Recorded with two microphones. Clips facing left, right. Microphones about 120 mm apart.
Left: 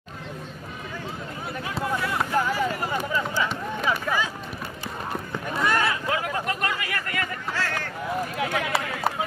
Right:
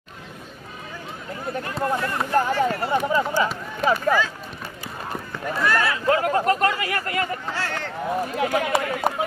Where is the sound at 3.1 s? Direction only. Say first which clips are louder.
Right 5 dB; 40° right (ahead or behind).